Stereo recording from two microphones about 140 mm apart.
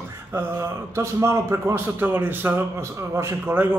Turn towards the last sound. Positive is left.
turn(degrees=-15)  # may be behind; listen again after turning